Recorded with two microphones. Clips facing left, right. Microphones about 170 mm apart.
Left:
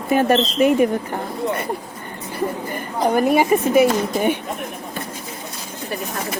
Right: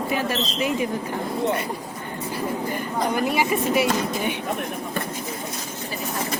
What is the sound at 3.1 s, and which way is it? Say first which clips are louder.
Speech: left 8 dB; 50° left (ahead or behind).